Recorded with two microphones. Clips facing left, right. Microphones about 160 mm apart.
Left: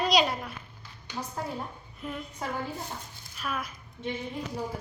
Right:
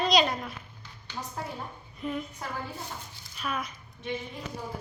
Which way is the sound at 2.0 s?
Centre (ahead or behind).